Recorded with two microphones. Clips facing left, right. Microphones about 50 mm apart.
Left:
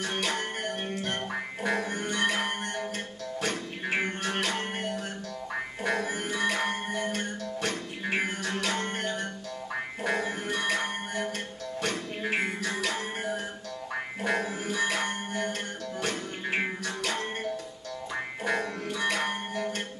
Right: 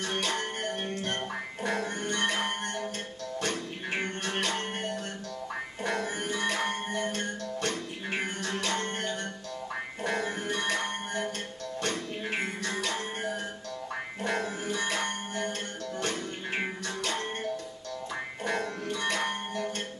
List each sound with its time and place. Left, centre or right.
0.0 s music: centre